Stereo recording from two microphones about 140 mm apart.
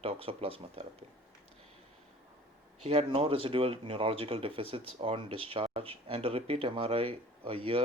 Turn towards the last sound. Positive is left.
turn(degrees=-40)  # may be behind; listen again after turning